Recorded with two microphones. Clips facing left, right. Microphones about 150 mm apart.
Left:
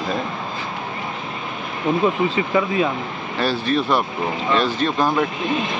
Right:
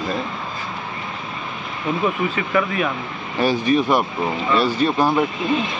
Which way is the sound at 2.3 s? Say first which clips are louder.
Left 2 dB; 25° left (ahead or behind).